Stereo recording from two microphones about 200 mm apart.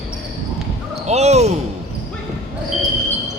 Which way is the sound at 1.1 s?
35° right (ahead or behind).